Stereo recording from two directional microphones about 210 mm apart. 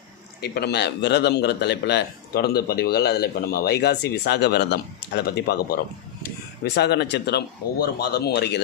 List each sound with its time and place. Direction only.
0.4 s a man's voice: 50° left (ahead or behind)